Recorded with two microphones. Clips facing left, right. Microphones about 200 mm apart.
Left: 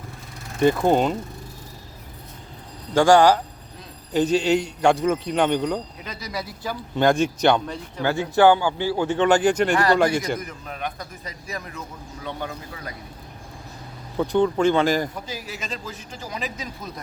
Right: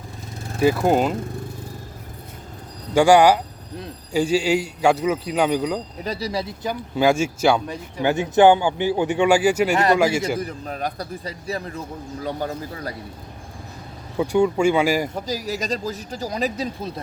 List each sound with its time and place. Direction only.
0.6 s a man's voice: 5° right (ahead or behind)
2.9 s a man's voice: 15° right (ahead or behind)
6.0 s speech: 35° right (ahead or behind)
6.9 s speech: 5° right (ahead or behind)
7.7 s a man's voice: 15° right (ahead or behind)
9.7 s speech: 20° right (ahead or behind)
10.4 s speech: 35° right (ahead or behind)
14.2 s a man's voice: 10° right (ahead or behind)
15.1 s speech: 40° right (ahead or behind)